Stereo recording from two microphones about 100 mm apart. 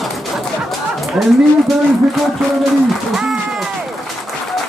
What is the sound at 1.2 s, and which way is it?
Speech, centre (ahead or behind).